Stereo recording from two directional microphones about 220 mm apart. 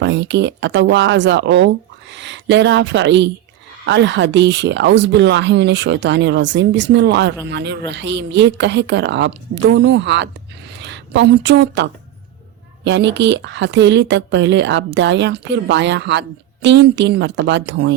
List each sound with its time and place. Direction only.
0.0 s speech: 55° right (ahead or behind)